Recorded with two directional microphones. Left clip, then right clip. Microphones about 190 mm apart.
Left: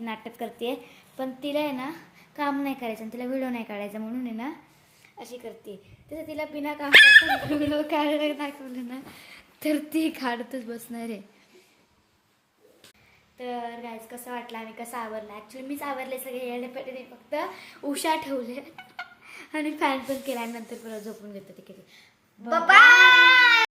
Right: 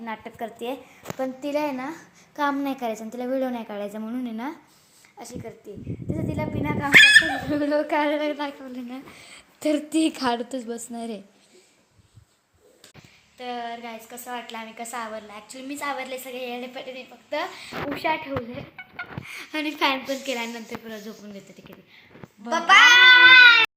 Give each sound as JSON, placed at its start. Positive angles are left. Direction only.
{"t": 0.0, "sound": "speech", "side_deg": 10}
{"t": 1.2, "sound": "a woman's voice", "side_deg": -15}
{"t": 5.1, "sound": "a woman's voice", "side_deg": -5}
{"t": 13.4, "sound": "a woman's voice", "side_deg": 0}
{"t": 17.9, "sound": "speech", "side_deg": 10}
{"t": 18.8, "sound": "a sound", "side_deg": 30}
{"t": 19.2, "sound": "a woman's voice", "side_deg": -10}
{"t": 22.4, "sound": "speech", "side_deg": 15}